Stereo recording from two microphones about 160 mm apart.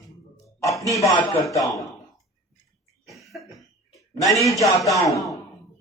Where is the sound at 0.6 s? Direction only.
20° left (ahead or behind).